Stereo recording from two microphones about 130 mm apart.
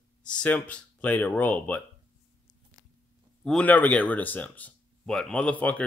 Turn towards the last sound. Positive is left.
turn(degrees=10)  # may be behind; listen again after turning